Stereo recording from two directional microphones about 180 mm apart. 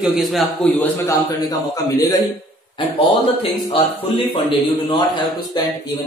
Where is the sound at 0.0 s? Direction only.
Centre (ahead or behind).